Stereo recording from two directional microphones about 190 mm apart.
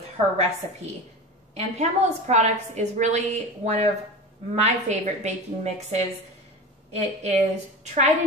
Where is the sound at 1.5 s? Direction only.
35° right (ahead or behind).